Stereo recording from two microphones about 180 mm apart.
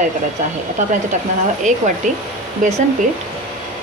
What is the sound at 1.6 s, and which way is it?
Speech, 45° right (ahead or behind).